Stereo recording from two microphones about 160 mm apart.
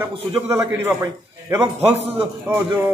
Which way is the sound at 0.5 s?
15° right (ahead or behind).